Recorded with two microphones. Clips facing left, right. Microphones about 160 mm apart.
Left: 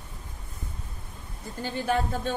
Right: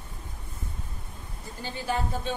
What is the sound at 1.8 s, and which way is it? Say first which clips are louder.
Speech: left 3 dB; 55° left (ahead or behind).